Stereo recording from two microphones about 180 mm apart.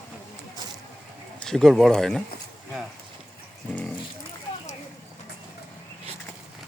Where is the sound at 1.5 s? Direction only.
Centre (ahead or behind).